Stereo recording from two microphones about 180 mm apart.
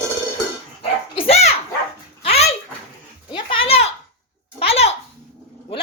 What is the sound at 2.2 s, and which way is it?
Dog, 35° left (ahead or behind).